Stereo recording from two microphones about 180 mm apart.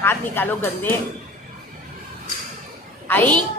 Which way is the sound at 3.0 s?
10° left (ahead or behind).